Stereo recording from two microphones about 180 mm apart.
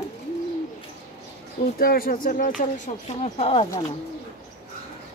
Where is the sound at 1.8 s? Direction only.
55° left (ahead or behind); by 3.6 s 35° left (ahead or behind).